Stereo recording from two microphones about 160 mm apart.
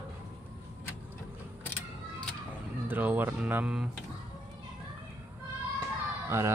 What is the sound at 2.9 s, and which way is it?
Speech, 10° right (ahead or behind).